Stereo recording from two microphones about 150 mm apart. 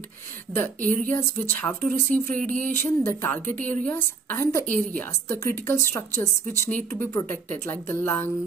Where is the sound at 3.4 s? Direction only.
60° right (ahead or behind).